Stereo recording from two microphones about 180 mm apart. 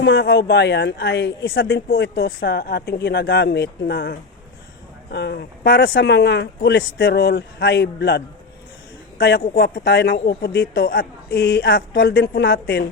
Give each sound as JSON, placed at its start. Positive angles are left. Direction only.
{"t": 0.0, "sound": "a man's voice", "side_deg": 65}
{"t": 1.5, "sound": "speech", "side_deg": 90}
{"t": 6.0, "sound": "a man's voice", "side_deg": 75}
{"t": 9.2, "sound": "speech", "side_deg": 60}